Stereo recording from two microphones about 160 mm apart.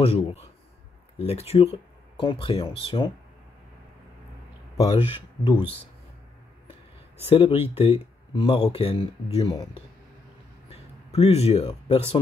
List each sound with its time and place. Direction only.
0.0 s speech: 40° left (ahead or behind)
4.7 s speech: 40° left (ahead or behind)
7.2 s speech: 35° left (ahead or behind)